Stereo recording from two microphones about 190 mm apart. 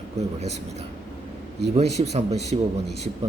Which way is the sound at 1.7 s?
35° right (ahead or behind).